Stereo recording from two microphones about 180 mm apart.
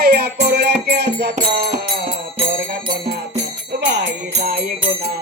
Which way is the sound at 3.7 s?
70° right (ahead or behind).